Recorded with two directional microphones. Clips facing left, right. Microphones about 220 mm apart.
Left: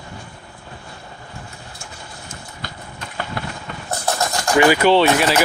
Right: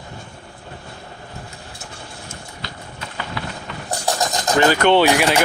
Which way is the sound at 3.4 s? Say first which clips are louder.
Even; 50° left (ahead or behind).